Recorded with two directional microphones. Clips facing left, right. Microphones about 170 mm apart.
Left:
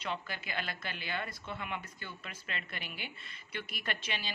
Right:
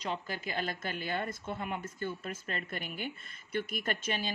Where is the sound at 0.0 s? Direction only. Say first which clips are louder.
Right 3 dB; 40° right (ahead or behind).